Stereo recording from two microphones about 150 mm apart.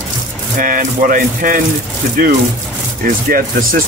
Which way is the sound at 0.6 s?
65° right (ahead or behind).